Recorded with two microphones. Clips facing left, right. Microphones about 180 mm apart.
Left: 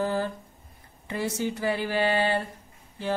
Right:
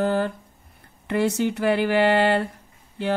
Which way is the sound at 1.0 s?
70° right (ahead or behind).